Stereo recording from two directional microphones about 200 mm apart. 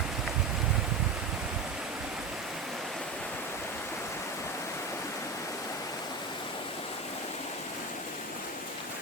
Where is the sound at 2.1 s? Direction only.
Centre (ahead or behind).